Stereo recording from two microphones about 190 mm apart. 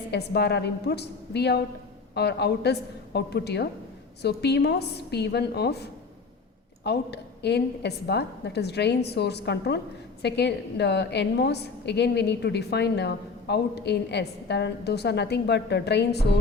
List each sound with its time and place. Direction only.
0.1 s a woman's voice: 60° left (ahead or behind)